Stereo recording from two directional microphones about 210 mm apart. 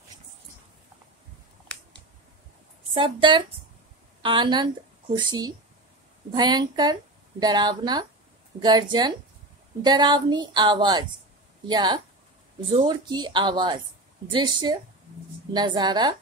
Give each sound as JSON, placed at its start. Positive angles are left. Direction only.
{"t": 2.9, "sound": "speech", "side_deg": -25}